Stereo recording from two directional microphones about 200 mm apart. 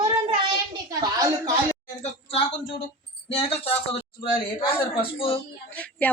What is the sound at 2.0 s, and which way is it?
Speech, 30° left (ahead or behind).